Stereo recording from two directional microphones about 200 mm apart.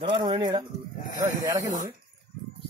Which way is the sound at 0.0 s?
20° right (ahead or behind).